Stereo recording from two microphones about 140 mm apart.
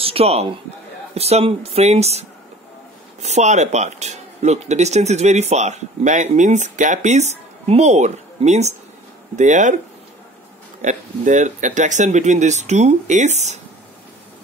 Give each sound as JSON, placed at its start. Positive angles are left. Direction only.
{"t": 0.0, "sound": "a man's voice", "side_deg": -45}
{"t": 10.8, "sound": "speech", "side_deg": -60}